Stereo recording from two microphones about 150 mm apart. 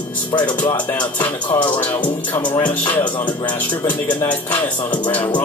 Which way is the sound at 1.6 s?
10° left (ahead or behind).